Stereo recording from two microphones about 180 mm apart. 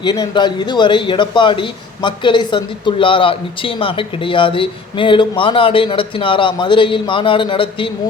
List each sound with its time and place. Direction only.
0.0 s a man's voice: 25° left (ahead or behind)